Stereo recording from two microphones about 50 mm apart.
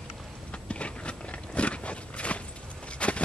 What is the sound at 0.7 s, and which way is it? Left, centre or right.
Walk, left.